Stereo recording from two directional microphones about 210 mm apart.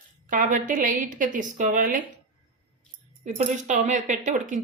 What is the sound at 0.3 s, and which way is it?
Speech, 40° right (ahead or behind).